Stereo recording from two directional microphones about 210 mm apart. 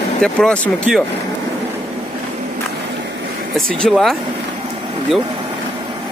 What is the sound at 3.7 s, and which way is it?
Speech, 5° left (ahead or behind).